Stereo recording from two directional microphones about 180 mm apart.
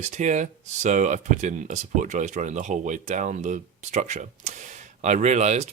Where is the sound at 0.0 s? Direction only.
40° right (ahead or behind).